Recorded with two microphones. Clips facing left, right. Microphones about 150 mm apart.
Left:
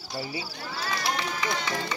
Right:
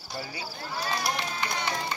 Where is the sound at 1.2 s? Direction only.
90° left.